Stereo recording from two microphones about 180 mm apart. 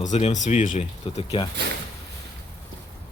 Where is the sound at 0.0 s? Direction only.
40° left (ahead or behind).